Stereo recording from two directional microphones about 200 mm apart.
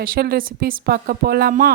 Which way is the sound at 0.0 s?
45° right (ahead or behind).